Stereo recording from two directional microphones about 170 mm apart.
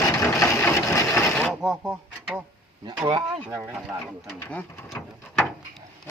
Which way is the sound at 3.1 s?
25° right (ahead or behind).